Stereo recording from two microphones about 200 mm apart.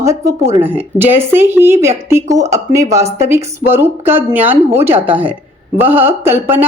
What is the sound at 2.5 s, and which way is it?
A woman's voice, 15° right (ahead or behind).